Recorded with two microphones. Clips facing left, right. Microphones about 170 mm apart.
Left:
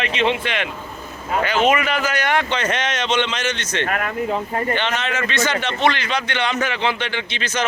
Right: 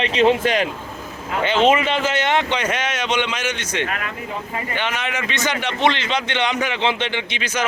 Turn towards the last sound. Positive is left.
turn(degrees=-10)  # may be behind; listen again after turning